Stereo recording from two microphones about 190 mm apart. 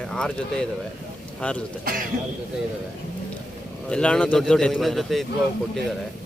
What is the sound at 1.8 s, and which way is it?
Speech, 50° right (ahead or behind).